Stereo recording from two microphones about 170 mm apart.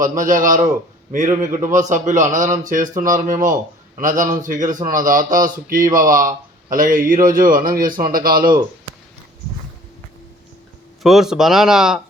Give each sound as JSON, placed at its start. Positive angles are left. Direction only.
{"t": 0.2, "sound": "speech", "side_deg": -50}
{"t": 11.0, "sound": "speech", "side_deg": 0}